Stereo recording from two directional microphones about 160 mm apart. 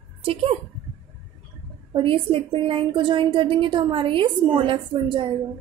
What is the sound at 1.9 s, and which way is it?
A woman's voice, 35° right (ahead or behind).